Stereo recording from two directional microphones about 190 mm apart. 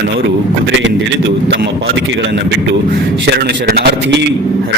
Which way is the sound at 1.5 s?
65° right (ahead or behind).